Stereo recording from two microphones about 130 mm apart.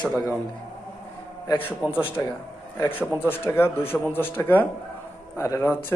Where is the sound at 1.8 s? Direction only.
25° left (ahead or behind).